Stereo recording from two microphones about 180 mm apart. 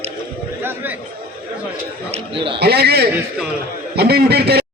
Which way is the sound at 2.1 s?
30° right (ahead or behind).